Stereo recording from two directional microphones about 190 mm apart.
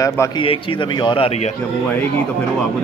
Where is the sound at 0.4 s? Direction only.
25° left (ahead or behind).